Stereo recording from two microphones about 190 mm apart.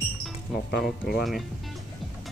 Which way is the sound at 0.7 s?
60° left (ahead or behind).